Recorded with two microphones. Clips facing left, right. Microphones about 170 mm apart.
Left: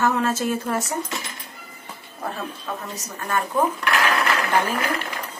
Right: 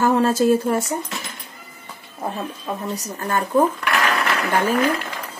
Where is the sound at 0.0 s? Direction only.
30° right (ahead or behind).